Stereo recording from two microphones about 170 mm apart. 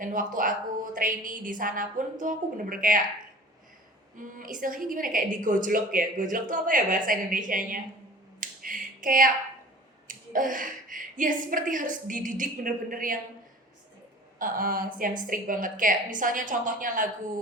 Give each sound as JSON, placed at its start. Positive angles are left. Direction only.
{"t": 0.0, "sound": "a sound", "side_deg": -50}
{"t": 0.3, "sound": "a woman's voice", "side_deg": -55}
{"t": 4.2, "sound": "a woman's voice", "side_deg": -50}
{"t": 8.4, "sound": "finger snapping", "side_deg": -50}
{"t": 10.1, "sound": "a woman's voice", "side_deg": -50}
{"t": 14.3, "sound": "a woman's voice", "side_deg": -55}